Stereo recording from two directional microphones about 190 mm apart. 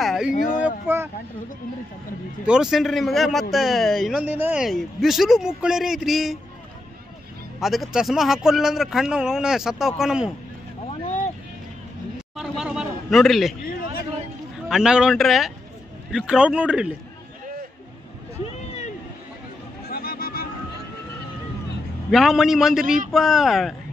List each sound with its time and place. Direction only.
0.0 s a sound: centre (ahead or behind)
0.3 s speech: 45° left (ahead or behind)
0.6 s speech: 10° right (ahead or behind)
2.4 s a man's voice: 5° right (ahead or behind)
7.6 s a man's voice: centre (ahead or behind)
12.4 s a man's voice: 5° right (ahead or behind)
14.7 s a man's voice: 5° right (ahead or behind)
19.9 s music: 55° left (ahead or behind)
22.1 s a man's voice: centre (ahead or behind)